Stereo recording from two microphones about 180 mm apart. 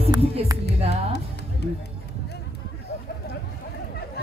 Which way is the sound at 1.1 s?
65° left (ahead or behind).